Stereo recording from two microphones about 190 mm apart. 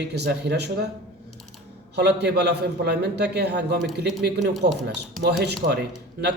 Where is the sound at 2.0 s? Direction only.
60° right (ahead or behind).